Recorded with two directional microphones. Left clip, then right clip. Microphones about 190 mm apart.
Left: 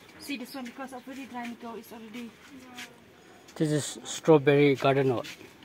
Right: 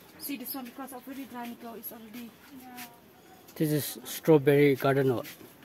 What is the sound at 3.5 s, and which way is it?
Speech, 15° right (ahead or behind).